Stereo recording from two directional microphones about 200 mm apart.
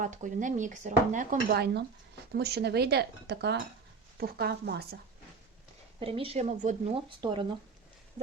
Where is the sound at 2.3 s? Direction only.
55° right (ahead or behind).